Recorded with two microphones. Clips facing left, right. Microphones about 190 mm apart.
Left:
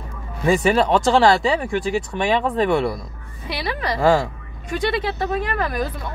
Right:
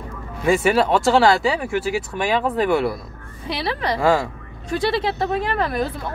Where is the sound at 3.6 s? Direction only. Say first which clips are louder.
Left 1 dB; 30° right (ahead or behind).